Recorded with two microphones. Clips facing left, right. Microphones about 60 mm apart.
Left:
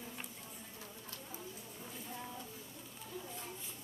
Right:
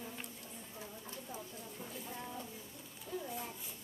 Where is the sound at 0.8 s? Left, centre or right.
Centre.